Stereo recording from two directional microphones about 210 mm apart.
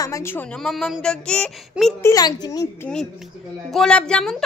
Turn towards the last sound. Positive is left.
turn(degrees=5)  # may be behind; listen again after turning